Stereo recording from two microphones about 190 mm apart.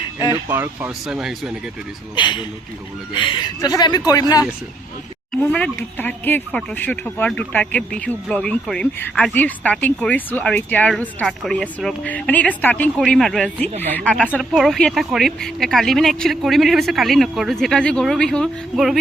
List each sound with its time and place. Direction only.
0.4 s speech: 10° right (ahead or behind)
2.1 s speech: 25° left (ahead or behind)
5.3 s speech: 5° left (ahead or behind)